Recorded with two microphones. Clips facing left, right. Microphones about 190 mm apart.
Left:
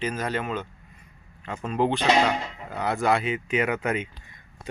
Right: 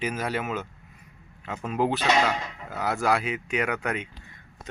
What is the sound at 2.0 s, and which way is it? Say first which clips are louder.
Speech: left 3 dB; 15° left (ahead or behind).